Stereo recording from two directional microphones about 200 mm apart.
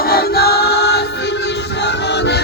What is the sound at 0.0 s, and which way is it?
Music, 50° left (ahead or behind).